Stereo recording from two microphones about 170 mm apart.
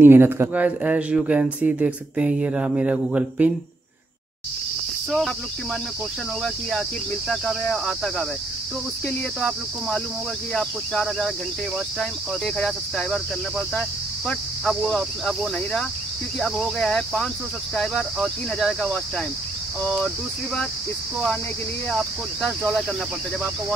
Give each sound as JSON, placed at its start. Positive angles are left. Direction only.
{"t": 0.0, "sound": "speech", "side_deg": -15}
{"t": 7.2, "sound": "speech", "side_deg": 0}
{"t": 9.4, "sound": "speech", "side_deg": 5}
{"t": 21.9, "sound": "speech", "side_deg": 0}